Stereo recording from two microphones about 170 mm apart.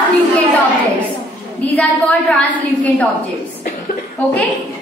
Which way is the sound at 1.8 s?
5° left (ahead or behind).